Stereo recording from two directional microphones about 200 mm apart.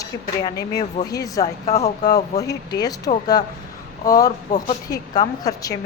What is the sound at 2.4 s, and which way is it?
A woman's voice, 20° left (ahead or behind).